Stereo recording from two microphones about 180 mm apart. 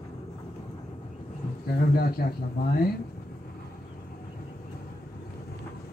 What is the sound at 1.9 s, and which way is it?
Speech, 60° left (ahead or behind).